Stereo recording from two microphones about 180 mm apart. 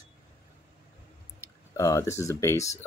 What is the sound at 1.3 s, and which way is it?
Speech, 15° left (ahead or behind).